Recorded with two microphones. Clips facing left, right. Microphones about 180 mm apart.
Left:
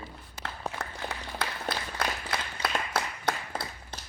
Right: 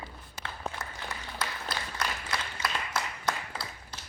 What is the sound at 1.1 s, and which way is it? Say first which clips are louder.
Applause: left 3 dB; 65° left (ahead or behind).